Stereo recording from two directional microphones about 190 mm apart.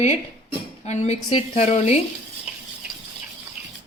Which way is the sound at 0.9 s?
35° left (ahead or behind).